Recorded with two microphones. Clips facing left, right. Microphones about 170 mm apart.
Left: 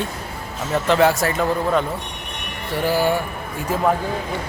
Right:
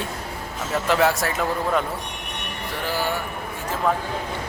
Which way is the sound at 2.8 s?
15° left (ahead or behind).